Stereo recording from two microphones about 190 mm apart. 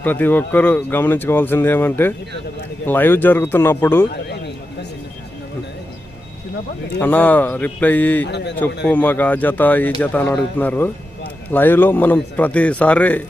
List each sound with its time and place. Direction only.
0.0 s speech: 10° left (ahead or behind)
4.3 s a sound: 60° left (ahead or behind)
7.0 s speech: 10° left (ahead or behind)